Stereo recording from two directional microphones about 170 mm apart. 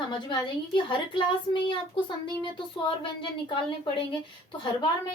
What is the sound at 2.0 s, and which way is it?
Speech, 30° left (ahead or behind).